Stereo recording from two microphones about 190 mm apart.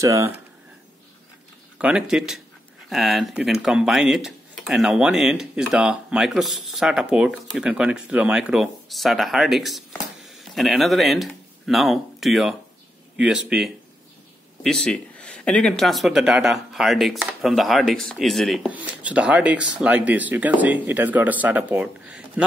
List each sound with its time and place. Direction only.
0.0 s speech: 15° right (ahead or behind)
1.8 s speech: 5° right (ahead or behind)